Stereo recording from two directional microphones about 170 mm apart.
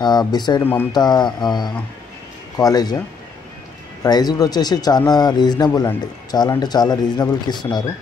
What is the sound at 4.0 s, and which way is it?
Speech, 25° left (ahead or behind).